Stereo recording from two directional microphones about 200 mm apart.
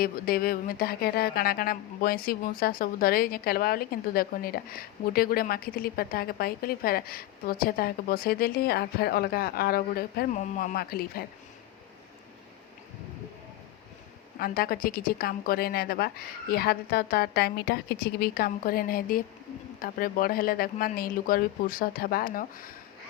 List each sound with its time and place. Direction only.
0.0 s speech: 50° left (ahead or behind)
14.3 s speech: 50° left (ahead or behind)